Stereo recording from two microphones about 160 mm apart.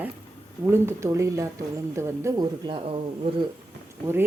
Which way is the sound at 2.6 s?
30° right (ahead or behind).